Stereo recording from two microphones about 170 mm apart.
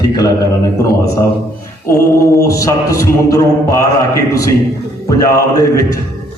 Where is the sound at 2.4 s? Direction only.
20° left (ahead or behind).